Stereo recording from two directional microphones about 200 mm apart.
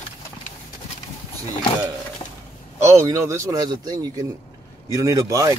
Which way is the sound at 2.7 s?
15° right (ahead or behind).